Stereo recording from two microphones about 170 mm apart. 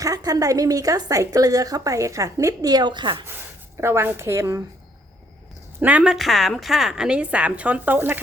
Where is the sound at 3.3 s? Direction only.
15° right (ahead or behind).